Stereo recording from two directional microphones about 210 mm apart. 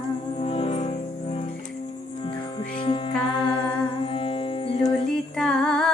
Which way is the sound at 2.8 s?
25° left (ahead or behind).